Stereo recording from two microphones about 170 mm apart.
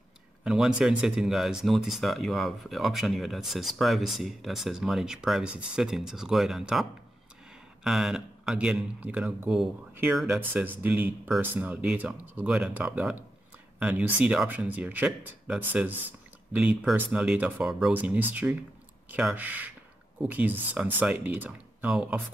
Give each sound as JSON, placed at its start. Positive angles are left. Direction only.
{"t": 0.4, "sound": "speech", "side_deg": -5}